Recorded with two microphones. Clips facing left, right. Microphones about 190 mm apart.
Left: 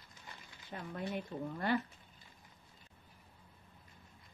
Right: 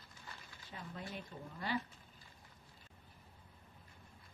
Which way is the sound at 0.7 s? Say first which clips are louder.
Left 5 dB; 50° left (ahead or behind).